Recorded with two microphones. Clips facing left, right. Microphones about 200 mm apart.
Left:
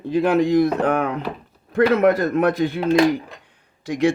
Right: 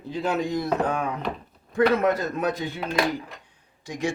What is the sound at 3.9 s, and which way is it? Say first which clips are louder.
Speech: left 9 dB; 60° left (ahead or behind).